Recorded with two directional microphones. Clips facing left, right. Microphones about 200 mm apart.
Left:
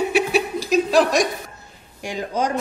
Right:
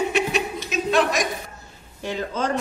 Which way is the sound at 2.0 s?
15° left (ahead or behind).